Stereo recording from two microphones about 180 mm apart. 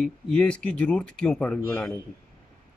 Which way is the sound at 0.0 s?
5° left (ahead or behind).